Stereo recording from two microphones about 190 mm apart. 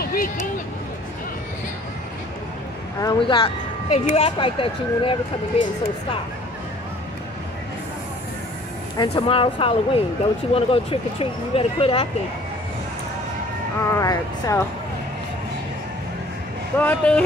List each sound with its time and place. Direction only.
0.0 s a sound: 50° left (ahead or behind)
3.0 s a woman's voice: 25° left (ahead or behind)
8.9 s speech: 25° left (ahead or behind)
13.8 s speech: 15° left (ahead or behind)
16.7 s speech: 5° left (ahead or behind)